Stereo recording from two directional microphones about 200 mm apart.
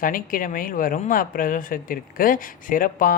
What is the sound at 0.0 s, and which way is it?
Speech, 45° left (ahead or behind).